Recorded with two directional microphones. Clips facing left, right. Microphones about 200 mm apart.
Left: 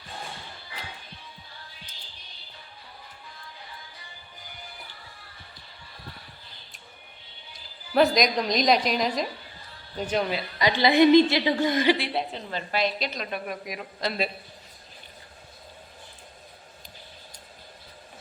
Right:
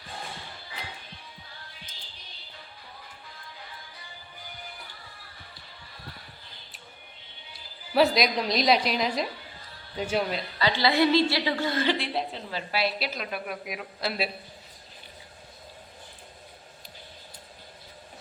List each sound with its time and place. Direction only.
7.9 s a woman's voice: 5° right (ahead or behind)
10.6 s a woman's voice: 15° left (ahead or behind)
11.9 s a woman's voice: centre (ahead or behind)